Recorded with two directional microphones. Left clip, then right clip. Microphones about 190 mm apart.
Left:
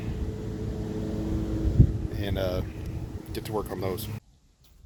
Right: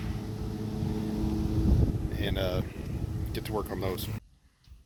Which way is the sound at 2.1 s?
10° left (ahead or behind).